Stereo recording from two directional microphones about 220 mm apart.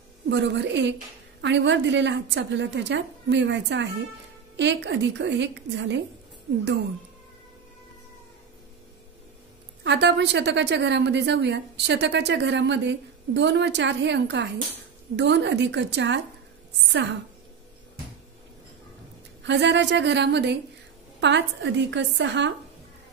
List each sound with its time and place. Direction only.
0.3 s a woman's voice: 55° right (ahead or behind)
9.8 s a woman's voice: 50° right (ahead or behind)
19.4 s a woman's voice: 55° right (ahead or behind)